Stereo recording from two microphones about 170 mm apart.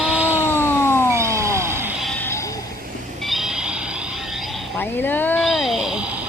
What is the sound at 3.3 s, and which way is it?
Music, centre (ahead or behind).